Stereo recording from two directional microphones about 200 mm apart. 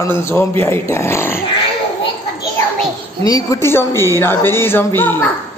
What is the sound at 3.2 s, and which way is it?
Speech, 20° left (ahead or behind).